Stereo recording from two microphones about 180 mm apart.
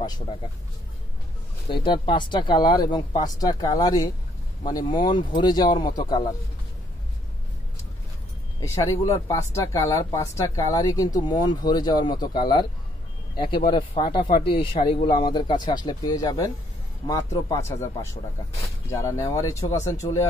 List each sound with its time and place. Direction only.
0.0 s speech: 20° left (ahead or behind)
1.7 s speech: 25° left (ahead or behind)
8.5 s speech: 15° left (ahead or behind)
13.7 s speech: 25° left (ahead or behind)